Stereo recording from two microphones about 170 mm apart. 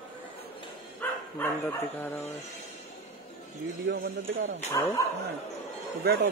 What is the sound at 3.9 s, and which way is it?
Speech, 85° right.